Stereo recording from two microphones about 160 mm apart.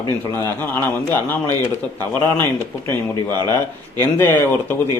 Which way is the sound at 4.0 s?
15° left (ahead or behind).